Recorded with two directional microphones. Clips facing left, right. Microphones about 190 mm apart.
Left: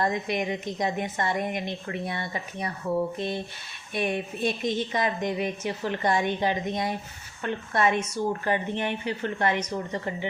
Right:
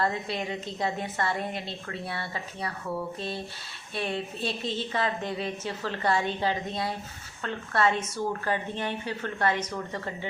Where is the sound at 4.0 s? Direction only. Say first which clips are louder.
Left 4 dB; 15° left (ahead or behind).